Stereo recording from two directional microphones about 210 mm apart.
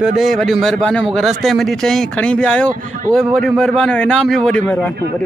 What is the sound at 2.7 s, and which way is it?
Speech, 40° right (ahead or behind).